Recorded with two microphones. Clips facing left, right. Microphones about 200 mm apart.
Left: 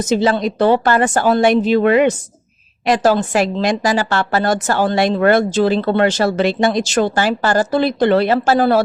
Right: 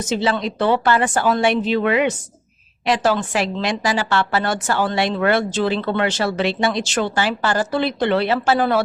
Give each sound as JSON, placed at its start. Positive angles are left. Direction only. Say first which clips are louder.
{"t": 0.1, "sound": "a woman's voice", "louder": "left 5 dB", "side_deg": 40}